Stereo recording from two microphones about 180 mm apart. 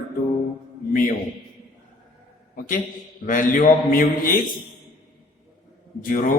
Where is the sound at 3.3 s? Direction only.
45° left (ahead or behind).